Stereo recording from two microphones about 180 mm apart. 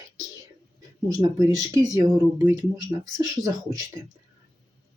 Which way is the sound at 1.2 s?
20° right (ahead or behind).